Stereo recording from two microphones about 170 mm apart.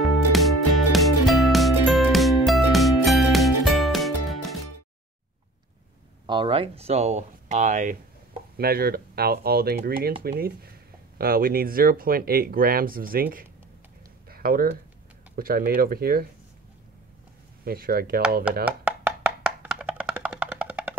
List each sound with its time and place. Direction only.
0.0 s music: centre (ahead or behind)
6.2 s speech: 30° right (ahead or behind); by 16.3 s 60° right (ahead or behind)
17.6 s speech: 60° right (ahead or behind)
18.7 s a sound: 10° right (ahead or behind)